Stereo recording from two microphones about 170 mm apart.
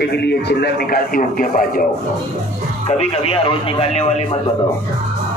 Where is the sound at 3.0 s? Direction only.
35° left (ahead or behind).